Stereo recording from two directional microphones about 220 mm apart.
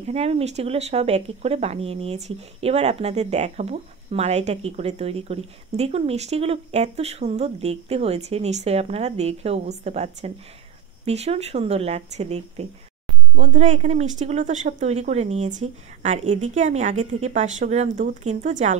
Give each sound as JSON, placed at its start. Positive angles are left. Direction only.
{"t": 0.0, "sound": "speech", "side_deg": -30}